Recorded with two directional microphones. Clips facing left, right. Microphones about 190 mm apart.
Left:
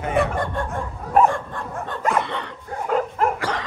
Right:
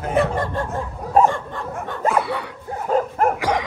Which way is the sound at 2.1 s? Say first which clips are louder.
Right 2 dB; 5° right (ahead or behind).